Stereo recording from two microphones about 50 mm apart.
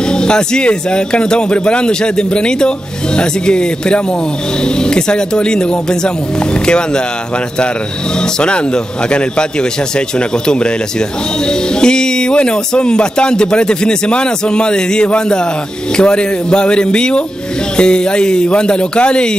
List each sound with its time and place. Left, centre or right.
0.0 s a man's voice: centre
8.2 s a man's voice: centre